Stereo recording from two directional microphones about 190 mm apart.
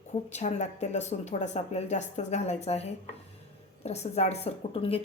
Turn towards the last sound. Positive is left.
turn(degrees=30)  # may be behind; listen again after turning